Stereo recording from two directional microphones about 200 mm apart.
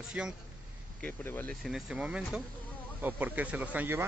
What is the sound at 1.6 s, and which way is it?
Speech, centre (ahead or behind).